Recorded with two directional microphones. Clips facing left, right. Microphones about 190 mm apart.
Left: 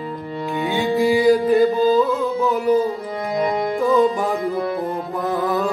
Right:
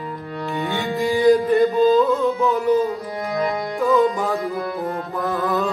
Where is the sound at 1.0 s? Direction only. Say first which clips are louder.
Even; 5° left (ahead or behind).